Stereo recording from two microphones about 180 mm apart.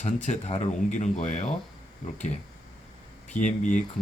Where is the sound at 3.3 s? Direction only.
45° left (ahead or behind).